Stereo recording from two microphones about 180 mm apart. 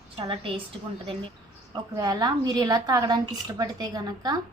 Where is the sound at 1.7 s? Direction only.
20° right (ahead or behind).